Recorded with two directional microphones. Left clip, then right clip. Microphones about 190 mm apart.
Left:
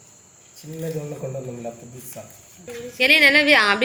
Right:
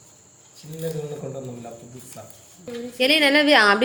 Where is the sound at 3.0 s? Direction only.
20° right (ahead or behind).